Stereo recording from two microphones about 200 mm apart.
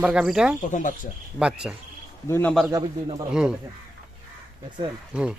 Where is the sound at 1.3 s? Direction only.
5° right (ahead or behind).